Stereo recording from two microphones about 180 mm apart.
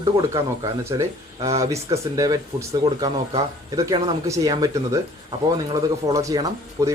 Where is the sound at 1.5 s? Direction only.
15° right (ahead or behind).